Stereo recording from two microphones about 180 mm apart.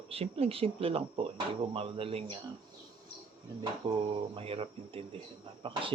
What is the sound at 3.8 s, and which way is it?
Speech, 25° right (ahead or behind).